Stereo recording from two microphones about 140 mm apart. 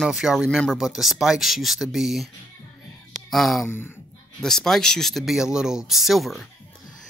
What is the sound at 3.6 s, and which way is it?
Speech, 15° left (ahead or behind).